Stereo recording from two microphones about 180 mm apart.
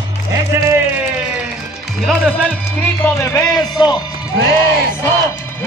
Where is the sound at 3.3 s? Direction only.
25° left (ahead or behind).